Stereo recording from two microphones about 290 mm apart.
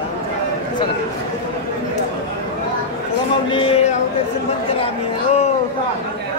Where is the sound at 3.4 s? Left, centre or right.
Centre.